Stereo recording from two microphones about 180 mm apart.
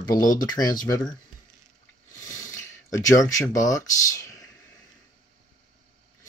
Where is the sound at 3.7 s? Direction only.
15° left (ahead or behind).